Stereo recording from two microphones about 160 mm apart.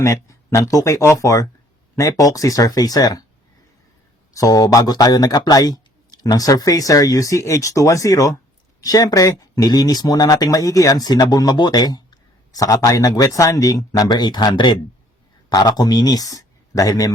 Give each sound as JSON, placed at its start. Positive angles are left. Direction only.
{"t": 0.0, "sound": "speech", "side_deg": 20}
{"t": 4.4, "sound": "speech", "side_deg": 25}